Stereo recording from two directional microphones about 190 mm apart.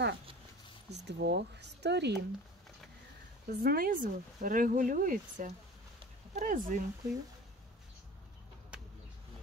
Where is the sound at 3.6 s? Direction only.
50° right (ahead or behind).